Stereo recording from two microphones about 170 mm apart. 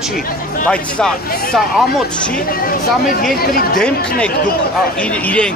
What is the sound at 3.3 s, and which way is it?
Speech, 60° left (ahead or behind).